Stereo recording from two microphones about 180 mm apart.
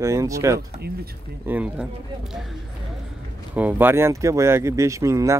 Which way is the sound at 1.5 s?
5° right (ahead or behind).